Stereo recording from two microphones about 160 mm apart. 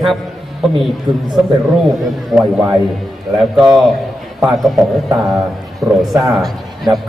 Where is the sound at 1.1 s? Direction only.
25° right (ahead or behind).